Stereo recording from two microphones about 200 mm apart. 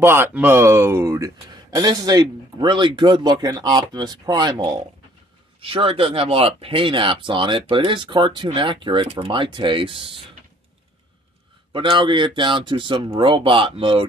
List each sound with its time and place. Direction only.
0.0 s speech: 10° right (ahead or behind); by 10.2 s 25° right (ahead or behind)
11.7 s speech: 25° right (ahead or behind)